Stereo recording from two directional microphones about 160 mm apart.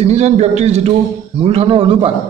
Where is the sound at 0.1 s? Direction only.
40° right (ahead or behind).